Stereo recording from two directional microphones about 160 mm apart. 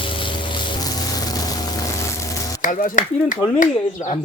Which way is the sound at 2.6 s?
55° left (ahead or behind).